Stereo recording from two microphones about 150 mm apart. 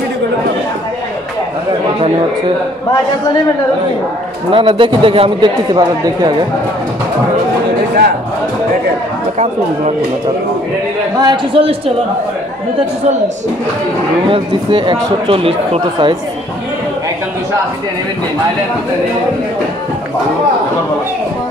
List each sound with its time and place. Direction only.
4.5 s speech: 35° right (ahead or behind)
11.1 s a man's voice: 30° right (ahead or behind)
14.3 s speech: 35° right (ahead or behind)